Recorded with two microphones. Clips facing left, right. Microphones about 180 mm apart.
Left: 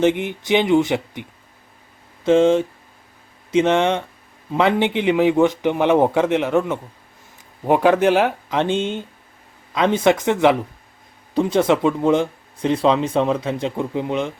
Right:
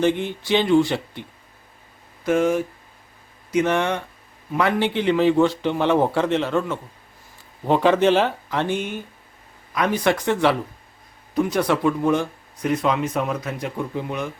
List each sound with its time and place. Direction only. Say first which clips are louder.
0.0 s a man's voice: left 3 dB; 20° left (ahead or behind)